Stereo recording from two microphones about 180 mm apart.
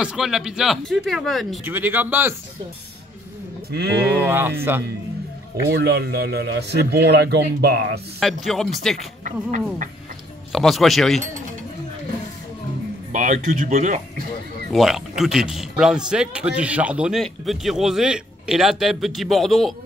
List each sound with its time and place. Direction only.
0.0 s a man's voice: 5° right (ahead or behind)
1.6 s speech: 10° right (ahead or behind)
3.7 s speech: 65° right (ahead or behind)
4.2 s speech: 10° right (ahead or behind)
5.7 s speech: 65° right (ahead or behind)
8.2 s a man's voice: centre (ahead or behind)
8.9 s speech: 45° right (ahead or behind)
10.5 s a man's voice: centre (ahead or behind)
13.1 s speech: 45° right (ahead or behind)
14.7 s a man's voice: centre (ahead or behind)